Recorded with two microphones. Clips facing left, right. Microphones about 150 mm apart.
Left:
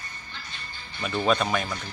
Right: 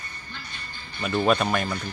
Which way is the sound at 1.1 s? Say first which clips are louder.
Right 2 dB; 10° right (ahead or behind).